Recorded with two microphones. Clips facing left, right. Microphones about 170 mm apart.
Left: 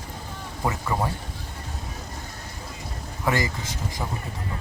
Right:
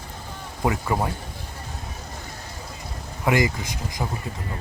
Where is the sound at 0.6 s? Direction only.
15° right (ahead or behind).